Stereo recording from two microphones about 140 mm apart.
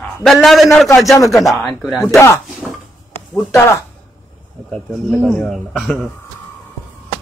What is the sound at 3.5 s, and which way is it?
Speech, 20° left (ahead or behind).